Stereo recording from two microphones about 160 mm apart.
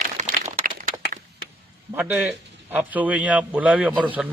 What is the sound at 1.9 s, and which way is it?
A man's voice, 10° right (ahead or behind).